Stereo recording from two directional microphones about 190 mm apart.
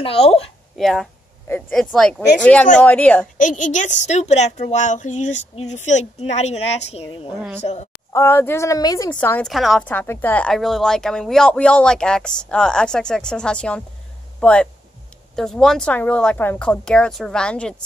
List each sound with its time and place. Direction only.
0.0 s a woman's voice: 30° left (ahead or behind)
0.7 s a woman's voice: centre (ahead or behind)
3.3 s a woman's voice: 40° left (ahead or behind)
8.1 s a woman's voice: 15° left (ahead or behind)
9.1 s a woman's voice: 5° left (ahead or behind)